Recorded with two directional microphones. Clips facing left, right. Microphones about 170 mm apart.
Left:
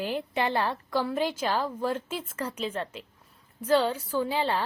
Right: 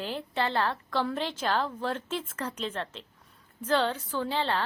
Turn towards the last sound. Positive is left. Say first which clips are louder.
# left 2 dB
turn(degrees=10)  # may be behind; listen again after turning